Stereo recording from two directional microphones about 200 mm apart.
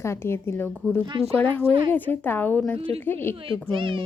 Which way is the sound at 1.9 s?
10° left (ahead or behind).